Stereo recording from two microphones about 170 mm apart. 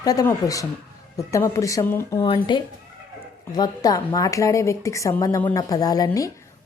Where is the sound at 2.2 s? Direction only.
25° left (ahead or behind).